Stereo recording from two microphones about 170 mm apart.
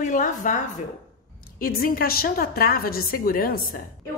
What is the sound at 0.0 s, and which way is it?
A woman's voice, 50° left (ahead or behind).